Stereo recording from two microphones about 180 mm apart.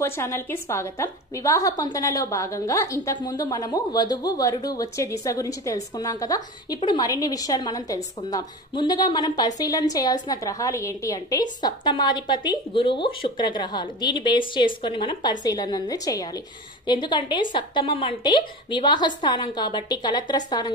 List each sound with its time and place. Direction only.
0.0 s a woman's voice: 15° left (ahead or behind)